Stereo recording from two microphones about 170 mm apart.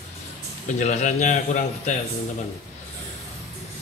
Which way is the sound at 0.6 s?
45° left (ahead or behind).